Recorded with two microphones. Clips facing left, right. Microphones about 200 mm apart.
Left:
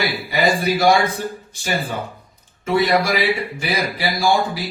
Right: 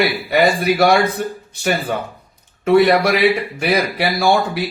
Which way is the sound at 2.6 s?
60° right (ahead or behind).